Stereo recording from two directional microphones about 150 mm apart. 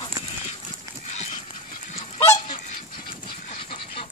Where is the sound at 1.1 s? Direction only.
45° left (ahead or behind).